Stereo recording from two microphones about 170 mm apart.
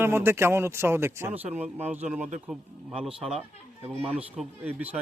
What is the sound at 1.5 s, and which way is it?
Speech, 40° right (ahead or behind).